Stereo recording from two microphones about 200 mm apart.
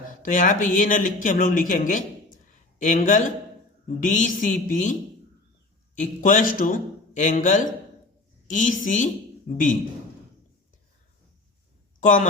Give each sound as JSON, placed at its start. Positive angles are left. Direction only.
{"t": 0.1, "sound": "speech", "side_deg": 40}
{"t": 6.0, "sound": "speech", "side_deg": 40}
{"t": 11.9, "sound": "a woman's voice", "side_deg": 40}